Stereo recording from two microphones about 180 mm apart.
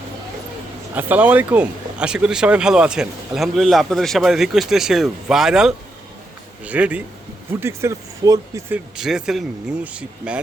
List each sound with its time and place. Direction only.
0.9 s speech: 10° right (ahead or behind)
9.0 s speech: 5° right (ahead or behind)